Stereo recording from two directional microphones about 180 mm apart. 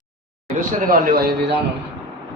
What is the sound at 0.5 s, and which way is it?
Speech, 55° right (ahead or behind).